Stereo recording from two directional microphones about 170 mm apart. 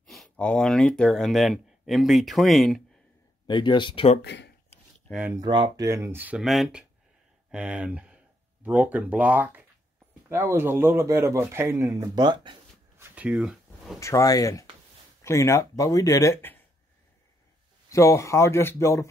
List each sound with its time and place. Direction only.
0.0 s speech: centre (ahead or behind)
3.4 s speech: 25° left (ahead or behind)
4.2 s speech: 80° left
5.3 s speech: 25° right (ahead or behind)
12.9 s a sound: 10° right (ahead or behind)
13.9 s speech: 15° left (ahead or behind)
17.8 s speech: 15° left (ahead or behind)